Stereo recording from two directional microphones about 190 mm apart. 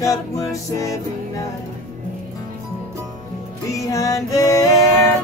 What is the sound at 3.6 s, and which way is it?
Music, 15° left (ahead or behind).